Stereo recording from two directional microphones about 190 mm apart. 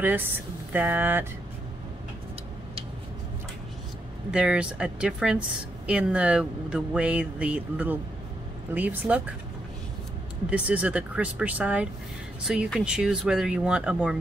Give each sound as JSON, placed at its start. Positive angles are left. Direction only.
{"t": 0.0, "sound": "speech", "side_deg": -10}
{"t": 4.3, "sound": "speech", "side_deg": -5}
{"t": 10.5, "sound": "speech", "side_deg": -5}